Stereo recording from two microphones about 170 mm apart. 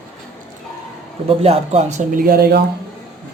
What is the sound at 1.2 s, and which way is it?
Speech, 35° right (ahead or behind).